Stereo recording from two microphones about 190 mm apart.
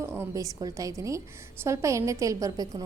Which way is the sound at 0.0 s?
15° right (ahead or behind).